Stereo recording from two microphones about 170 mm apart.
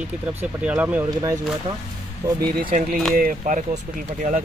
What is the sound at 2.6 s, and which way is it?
Speech, 55° right (ahead or behind).